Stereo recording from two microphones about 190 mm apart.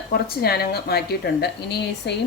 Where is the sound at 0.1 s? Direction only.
55° left (ahead or behind).